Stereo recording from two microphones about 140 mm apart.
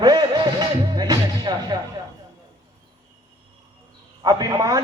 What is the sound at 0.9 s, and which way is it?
Music, 30° right (ahead or behind).